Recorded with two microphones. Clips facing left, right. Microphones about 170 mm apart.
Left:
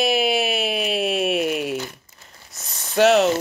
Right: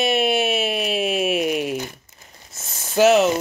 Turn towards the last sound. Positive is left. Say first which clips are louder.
# right 1 dB
turn(degrees=0)  # may be behind; listen again after turning